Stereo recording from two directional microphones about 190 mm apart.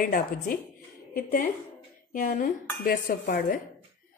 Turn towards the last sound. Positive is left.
turn(degrees=50)  # may be behind; listen again after turning